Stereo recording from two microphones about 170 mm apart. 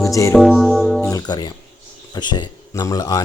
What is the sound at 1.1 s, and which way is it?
Music, 25° left (ahead or behind).